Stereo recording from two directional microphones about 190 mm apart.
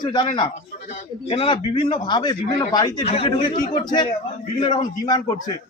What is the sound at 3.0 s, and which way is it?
Speech, 30° left (ahead or behind).